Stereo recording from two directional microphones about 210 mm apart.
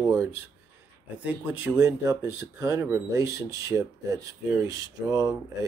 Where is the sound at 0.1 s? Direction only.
15° right (ahead or behind).